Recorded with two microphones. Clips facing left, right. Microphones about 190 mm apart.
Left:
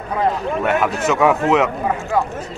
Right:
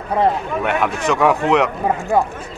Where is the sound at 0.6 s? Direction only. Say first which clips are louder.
Left 1 dB; centre (ahead or behind).